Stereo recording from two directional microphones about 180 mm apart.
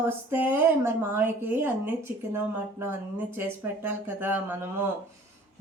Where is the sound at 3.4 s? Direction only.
10° right (ahead or behind).